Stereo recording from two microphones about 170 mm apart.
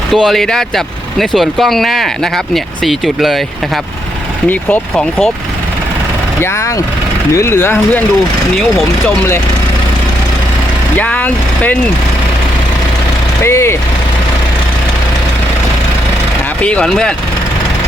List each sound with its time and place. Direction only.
0.1 s speech: centre (ahead or behind)
4.4 s speech: 5° left (ahead or behind)
7.3 s speech: 15° left (ahead or behind)
10.9 s speech: 10° left (ahead or behind)
13.4 s speech: 15° left (ahead or behind)
16.6 s speech: 5° left (ahead or behind)